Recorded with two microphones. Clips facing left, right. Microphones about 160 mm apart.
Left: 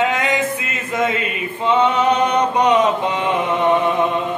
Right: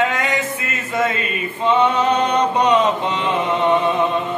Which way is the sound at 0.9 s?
15° left (ahead or behind).